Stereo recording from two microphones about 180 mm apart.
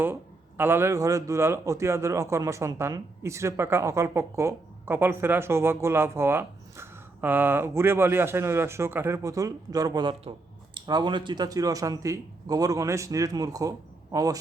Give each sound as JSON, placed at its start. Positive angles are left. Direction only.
{"t": 0.0, "sound": "speech", "side_deg": -10}